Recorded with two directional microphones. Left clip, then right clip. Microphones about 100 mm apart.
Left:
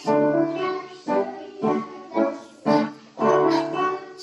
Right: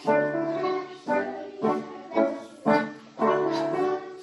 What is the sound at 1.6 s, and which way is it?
Music, 30° left (ahead or behind).